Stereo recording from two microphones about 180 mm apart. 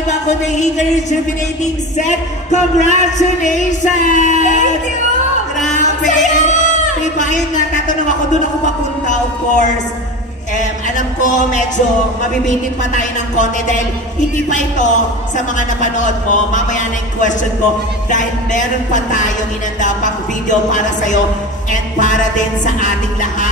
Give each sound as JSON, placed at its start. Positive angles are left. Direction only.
{"t": 0.3, "sound": "a sound", "side_deg": 40}
{"t": 1.6, "sound": "speech", "side_deg": 40}
{"t": 5.6, "sound": "music", "side_deg": 45}
{"t": 7.2, "sound": "speech", "side_deg": 45}
{"t": 9.0, "sound": "speech", "side_deg": 45}
{"t": 10.6, "sound": "a sound", "side_deg": 45}
{"t": 12.4, "sound": "speech", "side_deg": 45}
{"t": 22.7, "sound": "speech", "side_deg": 45}